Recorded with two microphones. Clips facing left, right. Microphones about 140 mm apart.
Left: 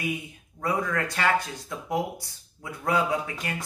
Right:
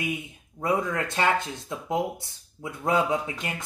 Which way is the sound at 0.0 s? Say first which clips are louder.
Even; 20° right (ahead or behind).